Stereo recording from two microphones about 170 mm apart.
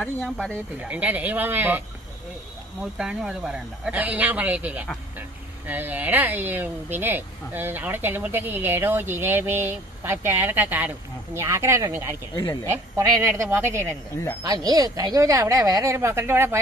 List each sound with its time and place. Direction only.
0.0 s speech: 10° left (ahead or behind)
0.7 s speech: 10° right (ahead or behind)
2.8 s speech: 5° right (ahead or behind)